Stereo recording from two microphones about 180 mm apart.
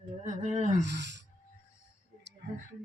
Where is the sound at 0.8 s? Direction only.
75° right (ahead or behind).